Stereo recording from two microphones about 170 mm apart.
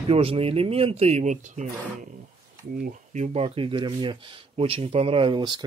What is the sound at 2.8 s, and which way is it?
Speech, 45° right (ahead or behind).